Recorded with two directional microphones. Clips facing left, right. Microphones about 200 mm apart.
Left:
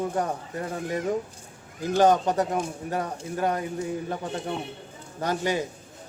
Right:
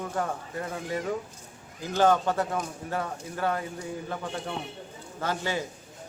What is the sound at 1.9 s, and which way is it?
A man's voice, 15° left (ahead or behind).